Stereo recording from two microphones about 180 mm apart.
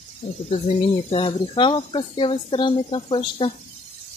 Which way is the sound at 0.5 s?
35° left (ahead or behind).